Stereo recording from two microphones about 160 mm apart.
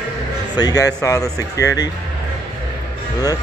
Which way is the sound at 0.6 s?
25° left (ahead or behind).